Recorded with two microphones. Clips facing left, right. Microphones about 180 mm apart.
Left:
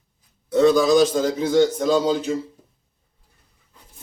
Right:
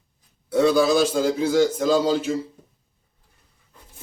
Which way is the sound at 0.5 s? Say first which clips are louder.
Left 2 dB; 5° right (ahead or behind).